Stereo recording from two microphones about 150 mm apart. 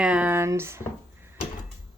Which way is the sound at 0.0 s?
5° right (ahead or behind).